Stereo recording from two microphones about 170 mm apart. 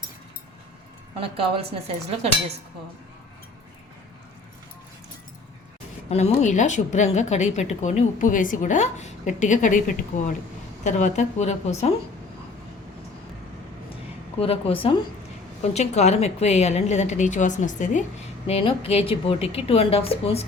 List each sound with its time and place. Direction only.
1.1 s speech: 35° right (ahead or behind)
6.1 s a woman's voice: 40° left (ahead or behind)
14.3 s a woman's voice: 35° left (ahead or behind)
18.4 s a woman's voice: 35° left (ahead or behind)